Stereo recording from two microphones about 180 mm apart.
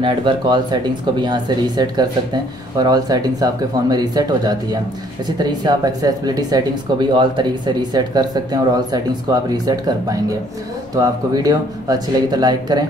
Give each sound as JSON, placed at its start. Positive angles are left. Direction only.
{"t": 0.0, "sound": "speech", "side_deg": -25}